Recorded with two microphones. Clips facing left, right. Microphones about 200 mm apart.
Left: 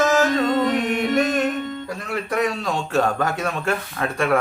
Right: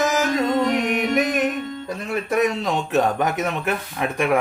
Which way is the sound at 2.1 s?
20° right (ahead or behind).